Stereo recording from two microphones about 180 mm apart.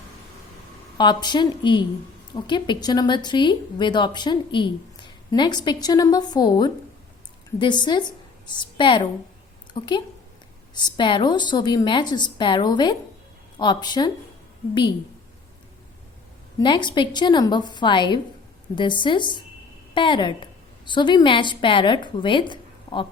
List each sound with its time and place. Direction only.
0.9 s speech: 25° left (ahead or behind)
16.6 s a woman's voice: 25° left (ahead or behind)